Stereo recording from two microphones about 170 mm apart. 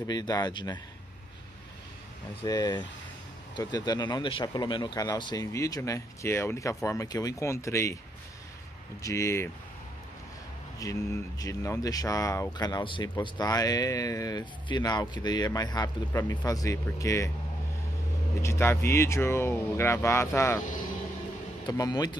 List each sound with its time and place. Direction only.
0.0 s speech: 25° left (ahead or behind)
2.4 s speech: 25° left (ahead or behind)
9.0 s speech: 15° left (ahead or behind)
10.8 s speech: 20° left (ahead or behind)
18.4 s speech: 15° left (ahead or behind)
21.6 s speech: 25° left (ahead or behind)